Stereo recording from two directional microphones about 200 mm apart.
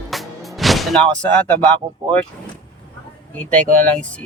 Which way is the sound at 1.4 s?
10° left (ahead or behind).